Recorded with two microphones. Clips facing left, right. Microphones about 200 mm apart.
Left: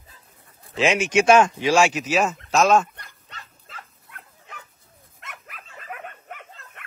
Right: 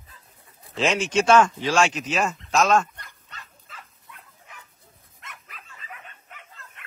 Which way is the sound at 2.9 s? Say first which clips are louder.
Left 1 dB; 30° left (ahead or behind).